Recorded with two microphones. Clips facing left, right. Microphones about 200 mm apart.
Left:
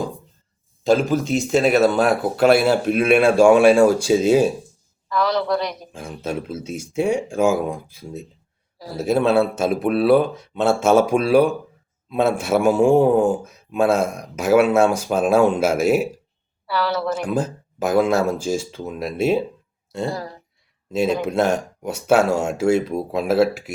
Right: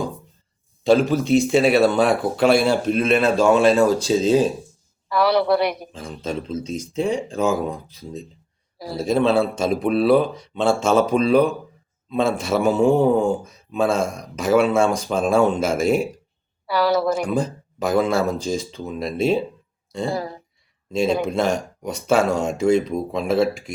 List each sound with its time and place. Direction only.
0.9 s a man's voice: centre (ahead or behind)
5.0 s a woman's voice: 10° right (ahead or behind)
5.9 s a man's voice: 10° left (ahead or behind)
16.6 s a woman's voice: 10° right (ahead or behind)
17.2 s a man's voice: 5° left (ahead or behind)
20.1 s speech: 15° right (ahead or behind)
20.9 s a man's voice: 5° left (ahead or behind)